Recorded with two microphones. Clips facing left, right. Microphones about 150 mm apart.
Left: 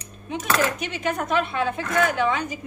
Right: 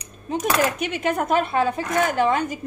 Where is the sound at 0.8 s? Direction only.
55° right (ahead or behind).